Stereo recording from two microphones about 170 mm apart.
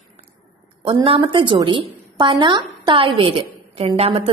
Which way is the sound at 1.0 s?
30° right (ahead or behind).